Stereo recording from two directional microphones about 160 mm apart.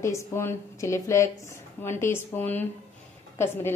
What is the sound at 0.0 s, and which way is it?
A woman's voice, 20° left (ahead or behind).